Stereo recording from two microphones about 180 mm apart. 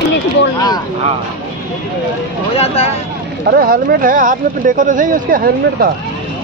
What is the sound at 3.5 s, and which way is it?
Speech, 55° right (ahead or behind).